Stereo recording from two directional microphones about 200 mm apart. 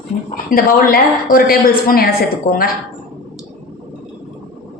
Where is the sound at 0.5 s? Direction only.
45° left (ahead or behind).